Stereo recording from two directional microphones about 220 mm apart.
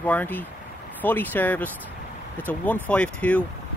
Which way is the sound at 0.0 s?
5° left (ahead or behind).